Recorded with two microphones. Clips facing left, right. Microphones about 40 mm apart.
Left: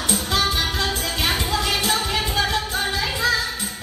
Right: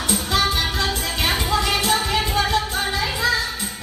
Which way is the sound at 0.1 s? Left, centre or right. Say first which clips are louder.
Right 1 dB; centre.